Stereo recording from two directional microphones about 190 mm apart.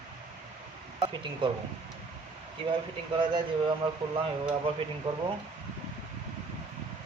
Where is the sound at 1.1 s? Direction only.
25° right (ahead or behind).